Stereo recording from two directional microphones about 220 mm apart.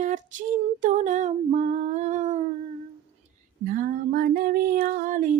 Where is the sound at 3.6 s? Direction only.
40° right (ahead or behind).